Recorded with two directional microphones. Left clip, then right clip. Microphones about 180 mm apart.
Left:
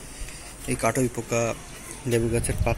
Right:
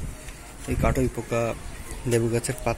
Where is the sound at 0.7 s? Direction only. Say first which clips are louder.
Left 1 dB; centre (ahead or behind).